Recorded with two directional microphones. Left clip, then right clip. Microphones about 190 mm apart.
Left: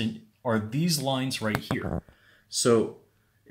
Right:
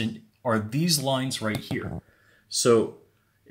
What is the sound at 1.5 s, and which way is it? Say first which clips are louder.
Speech: left 1 dB; 10° left (ahead or behind).